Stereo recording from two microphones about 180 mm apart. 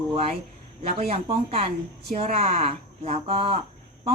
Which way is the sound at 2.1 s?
35° right (ahead or behind).